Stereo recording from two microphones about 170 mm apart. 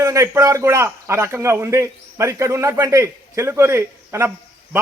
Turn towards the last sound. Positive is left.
turn(degrees=-15)  # may be behind; listen again after turning